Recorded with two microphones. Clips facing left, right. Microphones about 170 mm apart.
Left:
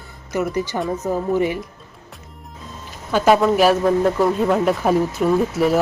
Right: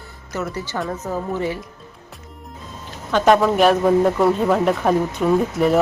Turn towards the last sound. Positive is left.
turn(degrees=0)  # may be behind; listen again after turning